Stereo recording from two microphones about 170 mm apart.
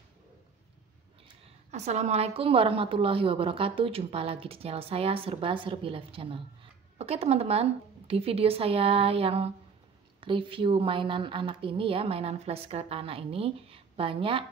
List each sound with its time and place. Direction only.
1.4 s a woman's voice: 40° right (ahead or behind)